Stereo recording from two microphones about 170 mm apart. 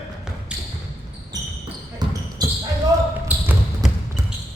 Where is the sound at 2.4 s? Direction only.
25° right (ahead or behind).